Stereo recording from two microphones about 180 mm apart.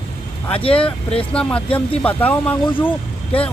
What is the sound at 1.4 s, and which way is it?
Speech, 5° left (ahead or behind).